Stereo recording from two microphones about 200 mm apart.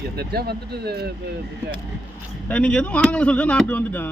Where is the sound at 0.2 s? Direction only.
50° right (ahead or behind).